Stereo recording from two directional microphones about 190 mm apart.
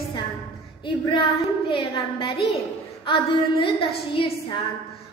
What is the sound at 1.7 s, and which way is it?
A woman's voice, 30° left (ahead or behind).